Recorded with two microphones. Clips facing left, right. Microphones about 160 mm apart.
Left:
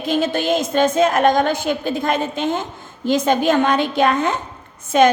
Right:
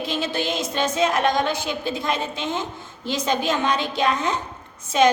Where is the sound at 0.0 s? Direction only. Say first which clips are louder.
Left 6 dB; 50° left (ahead or behind).